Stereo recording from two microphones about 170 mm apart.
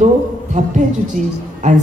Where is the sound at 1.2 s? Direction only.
45° right (ahead or behind).